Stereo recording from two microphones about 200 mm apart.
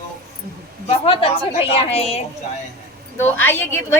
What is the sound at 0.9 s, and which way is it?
A woman's voice, 30° left (ahead or behind).